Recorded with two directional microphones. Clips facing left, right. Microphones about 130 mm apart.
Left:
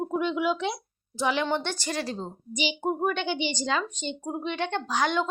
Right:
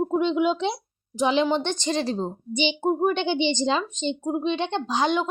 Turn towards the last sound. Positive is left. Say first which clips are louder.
# right 3 dB
turn(degrees=-15)  # may be behind; listen again after turning